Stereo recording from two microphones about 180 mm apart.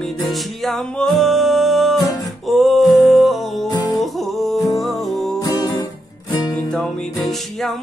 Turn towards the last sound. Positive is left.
turn(degrees=0)  # may be behind; listen again after turning